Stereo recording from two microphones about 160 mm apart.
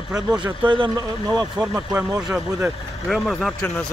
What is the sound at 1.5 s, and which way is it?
Speech, 10° right (ahead or behind).